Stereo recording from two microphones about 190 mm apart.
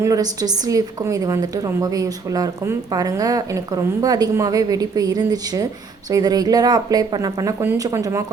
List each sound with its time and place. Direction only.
0.0 s a woman's voice: 20° right (ahead or behind)